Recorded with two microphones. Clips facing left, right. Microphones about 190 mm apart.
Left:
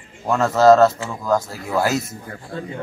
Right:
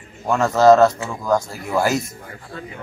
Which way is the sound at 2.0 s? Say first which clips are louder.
Left 3 dB; 30° left (ahead or behind).